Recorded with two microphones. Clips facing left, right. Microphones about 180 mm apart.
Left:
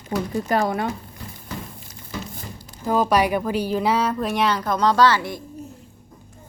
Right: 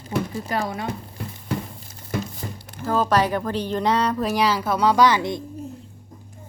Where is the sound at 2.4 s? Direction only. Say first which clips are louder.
Right 4 dB; 40° right (ahead or behind).